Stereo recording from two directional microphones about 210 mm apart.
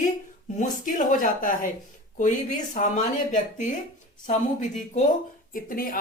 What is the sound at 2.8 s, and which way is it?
A woman's voice, 35° left (ahead or behind).